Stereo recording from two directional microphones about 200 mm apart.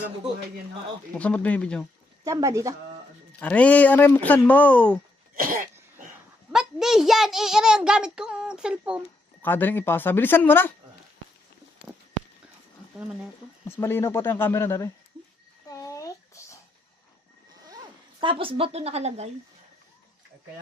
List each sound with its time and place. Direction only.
1.1 s speech: 5° left (ahead or behind)
2.2 s speech: 15° right (ahead or behind)
3.4 s speech: 5° left (ahead or behind)
5.4 s cough: 45° right (ahead or behind)
6.5 s a child's voice: 5° right (ahead or behind)
9.4 s speech: 10° left (ahead or behind)
13.7 s speech: 10° left (ahead or behind)
15.6 s a sound: 15° left (ahead or behind)
17.7 s a woman's voice: 20° right (ahead or behind)